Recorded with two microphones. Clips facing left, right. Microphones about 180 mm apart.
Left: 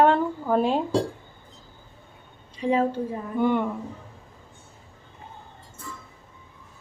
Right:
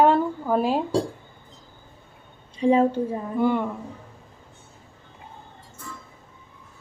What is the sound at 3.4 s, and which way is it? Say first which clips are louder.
Speech: even; centre (ahead or behind).